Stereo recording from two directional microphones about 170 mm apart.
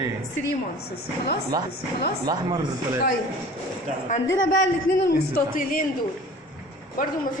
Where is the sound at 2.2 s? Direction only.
20° right (ahead or behind).